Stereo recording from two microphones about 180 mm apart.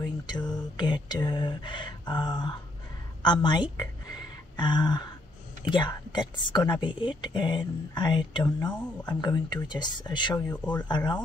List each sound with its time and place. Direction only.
0.0 s a woman's voice: 25° left (ahead or behind)